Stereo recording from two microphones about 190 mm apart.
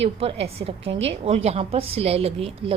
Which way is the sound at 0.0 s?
35° right (ahead or behind).